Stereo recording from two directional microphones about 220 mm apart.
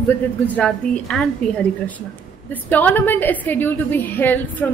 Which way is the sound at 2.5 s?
5° left (ahead or behind).